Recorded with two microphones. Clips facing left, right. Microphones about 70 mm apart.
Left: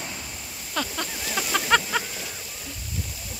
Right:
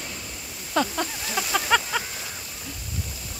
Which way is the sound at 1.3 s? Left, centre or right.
Centre.